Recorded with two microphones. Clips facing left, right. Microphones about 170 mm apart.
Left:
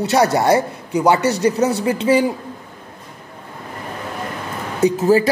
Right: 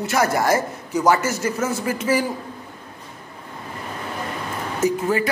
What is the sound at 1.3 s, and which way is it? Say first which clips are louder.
Speech: left 7 dB; 20° left (ahead or behind).